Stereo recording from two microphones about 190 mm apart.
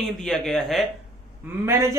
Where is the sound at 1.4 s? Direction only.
10° right (ahead or behind).